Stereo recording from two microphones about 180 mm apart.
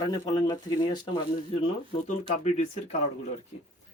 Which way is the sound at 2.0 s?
40° left (ahead or behind).